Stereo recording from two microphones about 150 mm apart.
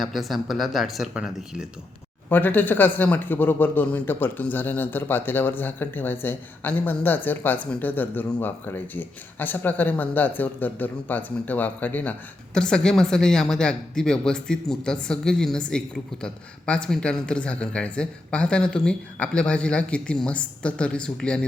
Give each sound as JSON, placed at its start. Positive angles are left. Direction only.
{"t": 0.0, "sound": "a woman's voice", "side_deg": 0}
{"t": 2.3, "sound": "a woman's voice", "side_deg": 10}